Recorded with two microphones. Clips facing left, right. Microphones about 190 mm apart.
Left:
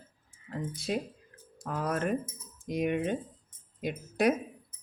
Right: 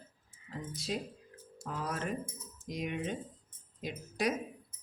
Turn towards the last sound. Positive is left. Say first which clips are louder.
# left 7 dB
turn(degrees=55)  # may be behind; listen again after turning